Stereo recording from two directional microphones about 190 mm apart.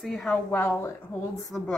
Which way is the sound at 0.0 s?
Centre (ahead or behind).